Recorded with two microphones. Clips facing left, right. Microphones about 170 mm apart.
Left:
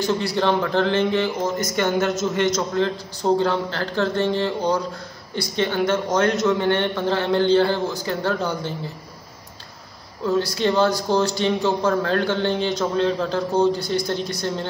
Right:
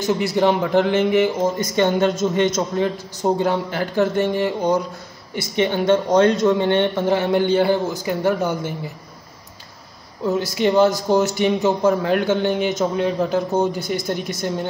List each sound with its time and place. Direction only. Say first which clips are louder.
0.0 s a man's voice: right 3 dB; 20° right (ahead or behind)
1.4 s speech: right 4 dB; 25° right (ahead or behind)
2.7 s a man's voice: right 1 dB; 15° right (ahead or behind)
10.2 s speech: right 1 dB; 20° right (ahead or behind)